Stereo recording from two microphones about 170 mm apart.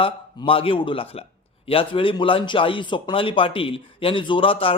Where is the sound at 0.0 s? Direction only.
30° left (ahead or behind).